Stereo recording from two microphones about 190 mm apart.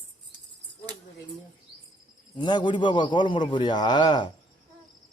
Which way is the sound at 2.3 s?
25° left (ahead or behind).